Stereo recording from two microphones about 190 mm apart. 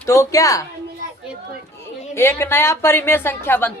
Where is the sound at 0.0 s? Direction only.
15° left (ahead or behind).